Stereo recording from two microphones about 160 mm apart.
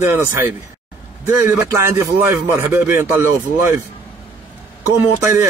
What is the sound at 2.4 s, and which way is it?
A man's voice, 15° right (ahead or behind).